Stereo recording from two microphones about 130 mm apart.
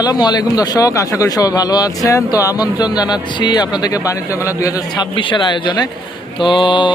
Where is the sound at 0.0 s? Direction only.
30° left (ahead or behind).